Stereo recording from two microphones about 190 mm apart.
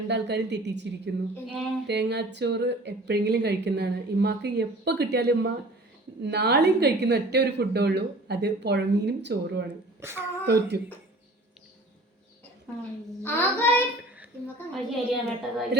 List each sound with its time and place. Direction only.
0.1 s speech: 65° right (ahead or behind)
10.0 s speech: 10° right (ahead or behind)
10.4 s speech: 60° right (ahead or behind)
13.2 s child singing: 10° left (ahead or behind)
14.8 s a woman's voice: centre (ahead or behind)